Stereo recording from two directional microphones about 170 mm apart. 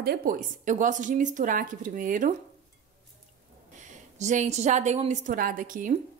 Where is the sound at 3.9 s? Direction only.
45° right (ahead or behind).